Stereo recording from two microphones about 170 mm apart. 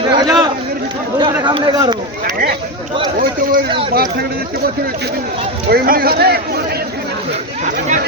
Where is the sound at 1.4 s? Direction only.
25° right (ahead or behind).